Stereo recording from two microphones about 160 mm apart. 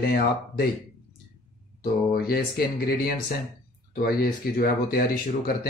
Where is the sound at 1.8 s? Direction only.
70° left (ahead or behind).